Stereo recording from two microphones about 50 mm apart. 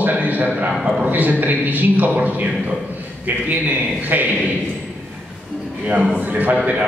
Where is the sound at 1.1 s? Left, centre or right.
Right.